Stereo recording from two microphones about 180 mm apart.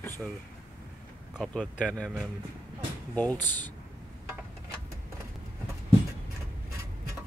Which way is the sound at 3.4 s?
10° left (ahead or behind).